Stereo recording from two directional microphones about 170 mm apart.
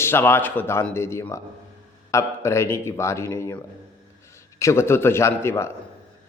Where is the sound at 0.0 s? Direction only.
15° left (ahead or behind).